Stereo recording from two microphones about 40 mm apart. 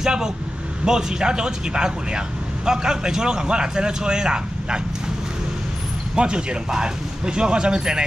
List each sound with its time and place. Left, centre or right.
0.0 s speech: centre
6.1 s speech: right